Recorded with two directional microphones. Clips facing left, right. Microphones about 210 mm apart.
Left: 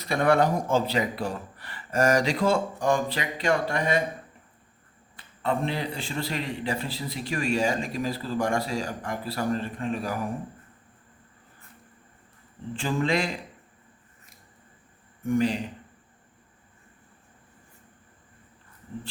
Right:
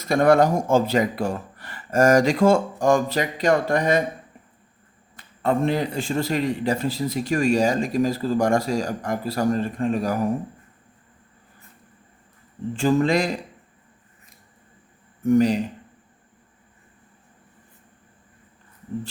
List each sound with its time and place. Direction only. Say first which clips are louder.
0.0 s a man's voice: right 5 dB; 45° right (ahead or behind)
5.1 s a man's voice: right 5 dB; 45° right (ahead or behind)
12.7 s speech: right 7 dB; 45° right (ahead or behind)
15.2 s a man's voice: right 7 dB; 40° right (ahead or behind)